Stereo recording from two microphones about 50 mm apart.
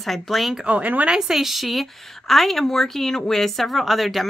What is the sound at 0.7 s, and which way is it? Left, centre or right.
Speech, right.